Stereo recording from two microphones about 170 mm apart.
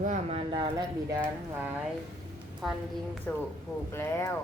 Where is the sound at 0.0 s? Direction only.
40° right (ahead or behind).